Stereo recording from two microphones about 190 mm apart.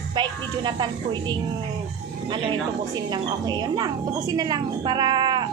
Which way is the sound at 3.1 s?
20° right (ahead or behind).